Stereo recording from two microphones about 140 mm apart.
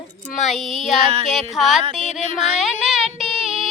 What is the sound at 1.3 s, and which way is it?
Music, centre (ahead or behind).